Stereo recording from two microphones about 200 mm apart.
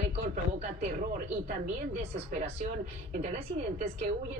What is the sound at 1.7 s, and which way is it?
A woman's voice, 35° right (ahead or behind).